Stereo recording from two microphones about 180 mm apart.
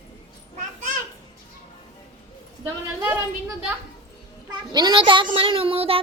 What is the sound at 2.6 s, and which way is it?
Speech, 15° right (ahead or behind).